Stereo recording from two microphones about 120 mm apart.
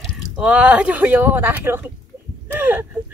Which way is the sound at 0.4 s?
10° right (ahead or behind).